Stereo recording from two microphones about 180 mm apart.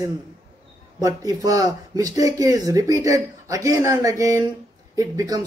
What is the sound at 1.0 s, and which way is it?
Speech, 20° right (ahead or behind).